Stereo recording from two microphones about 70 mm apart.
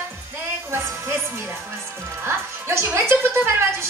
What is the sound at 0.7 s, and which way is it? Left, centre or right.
Speech, right.